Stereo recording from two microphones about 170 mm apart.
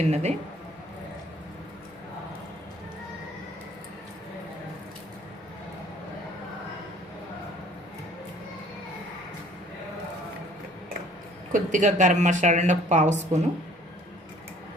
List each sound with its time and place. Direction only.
0.1 s speech: 40° right (ahead or behind)
11.5 s speech: 50° right (ahead or behind)